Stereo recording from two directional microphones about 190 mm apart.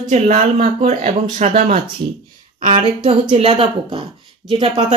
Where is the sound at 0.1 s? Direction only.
35° right (ahead or behind).